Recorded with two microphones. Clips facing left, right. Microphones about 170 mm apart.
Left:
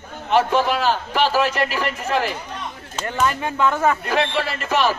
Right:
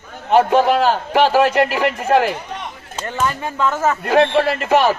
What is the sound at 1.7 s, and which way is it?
Speech, 20° right (ahead or behind).